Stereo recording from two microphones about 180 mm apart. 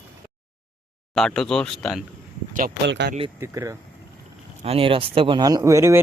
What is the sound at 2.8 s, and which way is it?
Speech, 75° right (ahead or behind).